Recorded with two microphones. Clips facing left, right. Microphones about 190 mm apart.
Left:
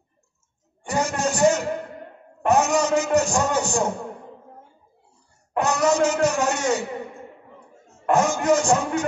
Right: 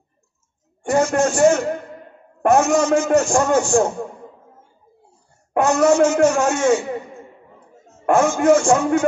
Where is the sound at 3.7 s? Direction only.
50° right (ahead or behind).